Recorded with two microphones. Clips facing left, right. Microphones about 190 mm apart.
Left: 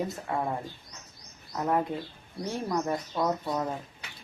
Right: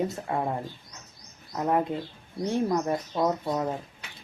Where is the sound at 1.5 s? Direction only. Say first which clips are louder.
Right 2 dB; 20° right (ahead or behind).